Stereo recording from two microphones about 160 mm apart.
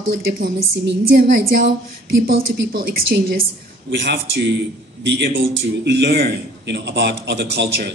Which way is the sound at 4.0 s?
90° right.